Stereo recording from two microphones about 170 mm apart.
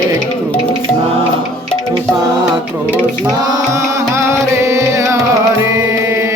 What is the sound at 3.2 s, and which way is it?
Music, 15° right (ahead or behind).